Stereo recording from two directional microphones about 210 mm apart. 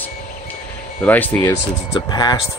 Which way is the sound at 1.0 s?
10° left (ahead or behind).